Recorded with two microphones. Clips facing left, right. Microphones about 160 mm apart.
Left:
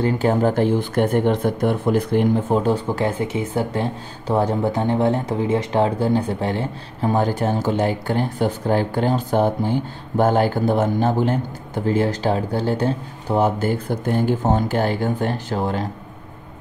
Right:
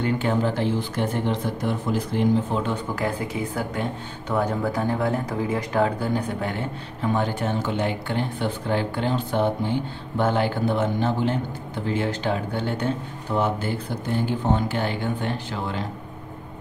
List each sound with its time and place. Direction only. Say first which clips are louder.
0.0 s speech: left 5 dB; 40° left (ahead or behind); by 2.6 s 55° left (ahead or behind)
2.6 s speech: left 6 dB; 30° left (ahead or behind)